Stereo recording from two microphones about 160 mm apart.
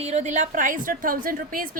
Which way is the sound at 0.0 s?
45° right (ahead or behind).